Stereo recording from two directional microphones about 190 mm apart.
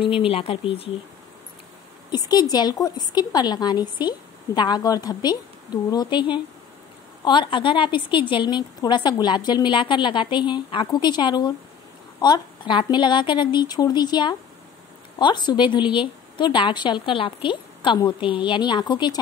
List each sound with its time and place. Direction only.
0.0 s a woman's voice: 30° left (ahead or behind)
2.0 s a woman's voice: 20° left (ahead or behind)